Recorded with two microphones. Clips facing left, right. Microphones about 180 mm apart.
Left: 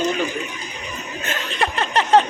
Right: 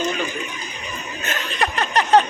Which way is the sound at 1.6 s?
25° left (ahead or behind).